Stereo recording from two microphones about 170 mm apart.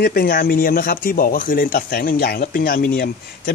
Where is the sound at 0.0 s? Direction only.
60° left (ahead or behind).